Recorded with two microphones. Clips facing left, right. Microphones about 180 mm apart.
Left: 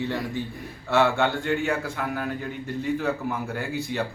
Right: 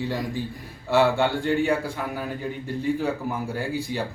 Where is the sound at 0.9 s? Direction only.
15° right (ahead or behind).